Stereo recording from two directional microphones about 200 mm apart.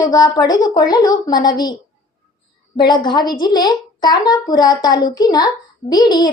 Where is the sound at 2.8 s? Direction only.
20° left (ahead or behind).